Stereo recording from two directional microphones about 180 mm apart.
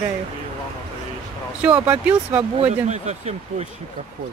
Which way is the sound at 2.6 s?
40° right (ahead or behind).